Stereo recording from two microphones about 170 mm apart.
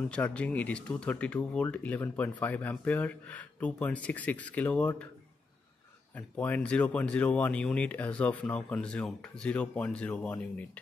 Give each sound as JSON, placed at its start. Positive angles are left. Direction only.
{"t": 0.1, "sound": "speech", "side_deg": 5}
{"t": 6.1, "sound": "speech", "side_deg": 10}